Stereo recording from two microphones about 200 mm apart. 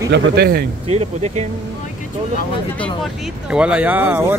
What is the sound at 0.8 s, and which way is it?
Speech, 35° right (ahead or behind).